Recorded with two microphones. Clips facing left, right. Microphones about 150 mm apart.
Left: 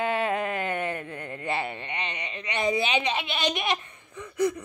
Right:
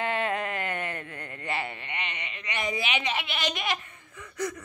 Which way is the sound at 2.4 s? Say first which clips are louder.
Left 5 dB; 25° left (ahead or behind).